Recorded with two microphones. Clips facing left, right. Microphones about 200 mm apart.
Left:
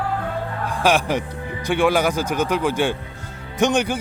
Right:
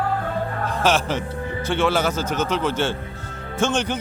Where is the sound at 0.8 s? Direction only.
15° left (ahead or behind).